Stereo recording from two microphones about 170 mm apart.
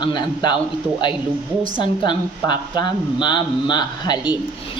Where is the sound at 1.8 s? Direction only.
25° left (ahead or behind).